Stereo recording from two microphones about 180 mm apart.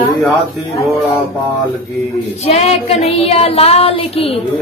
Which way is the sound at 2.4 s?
35° left (ahead or behind).